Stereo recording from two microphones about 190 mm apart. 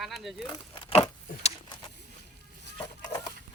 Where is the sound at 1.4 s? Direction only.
35° left (ahead or behind).